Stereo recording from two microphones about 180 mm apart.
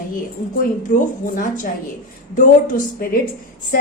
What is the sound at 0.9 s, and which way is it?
Speech, 45° left (ahead or behind).